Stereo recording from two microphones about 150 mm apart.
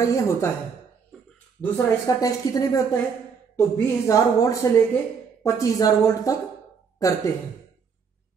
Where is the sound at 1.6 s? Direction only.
20° left (ahead or behind).